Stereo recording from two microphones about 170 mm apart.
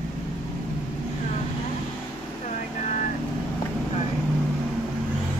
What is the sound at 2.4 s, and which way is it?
Vehicle, 45° left (ahead or behind).